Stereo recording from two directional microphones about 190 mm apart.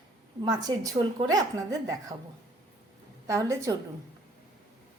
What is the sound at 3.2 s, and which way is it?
Speech, 15° right (ahead or behind).